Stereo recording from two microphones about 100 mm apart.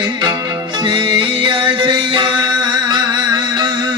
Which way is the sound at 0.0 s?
45° right (ahead or behind).